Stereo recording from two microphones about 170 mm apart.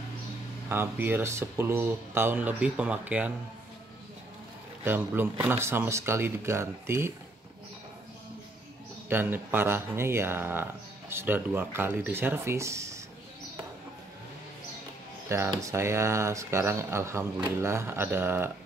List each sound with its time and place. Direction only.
0.7 s speech: 10° right (ahead or behind)
4.8 s speech: 10° right (ahead or behind)
9.1 s speech: 10° right (ahead or behind)
15.2 s speech: 15° right (ahead or behind)